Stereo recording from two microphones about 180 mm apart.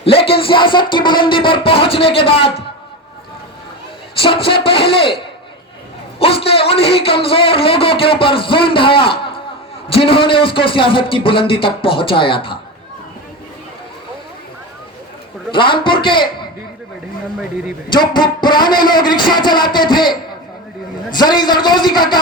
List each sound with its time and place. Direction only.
0.0 s music: 30° left (ahead or behind)
0.4 s a man's voice: 30° left (ahead or behind)
4.2 s a man's voice: 30° left (ahead or behind)
6.1 s a man's voice: 30° left (ahead or behind)
15.5 s a man's voice: 30° left (ahead or behind)
17.8 s a man's voice: 25° left (ahead or behind)
21.2 s a man's voice: 25° left (ahead or behind)